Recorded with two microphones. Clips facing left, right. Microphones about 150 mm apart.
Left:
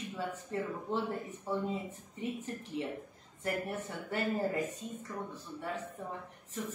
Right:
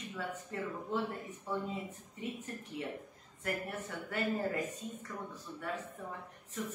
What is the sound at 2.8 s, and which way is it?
Speech, 25° left (ahead or behind).